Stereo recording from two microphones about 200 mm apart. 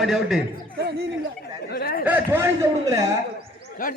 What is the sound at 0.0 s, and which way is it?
Speech, centre (ahead or behind).